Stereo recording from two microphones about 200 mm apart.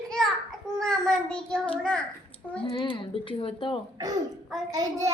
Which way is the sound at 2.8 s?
25° left (ahead or behind).